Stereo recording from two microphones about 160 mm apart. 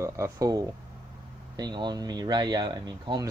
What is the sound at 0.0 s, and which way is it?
Speech, 15° right (ahead or behind).